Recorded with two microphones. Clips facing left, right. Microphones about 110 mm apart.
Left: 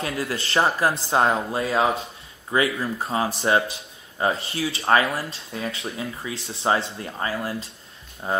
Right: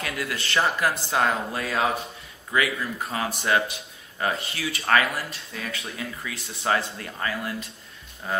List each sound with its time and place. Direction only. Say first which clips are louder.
0.0 s speech: left 3 dB; 30° left (ahead or behind)